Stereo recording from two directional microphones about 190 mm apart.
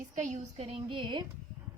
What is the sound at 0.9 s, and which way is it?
Speech, 25° right (ahead or behind).